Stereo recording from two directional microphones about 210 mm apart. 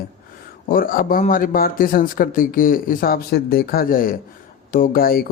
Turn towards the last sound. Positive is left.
turn(degrees=45)  # may be behind; listen again after turning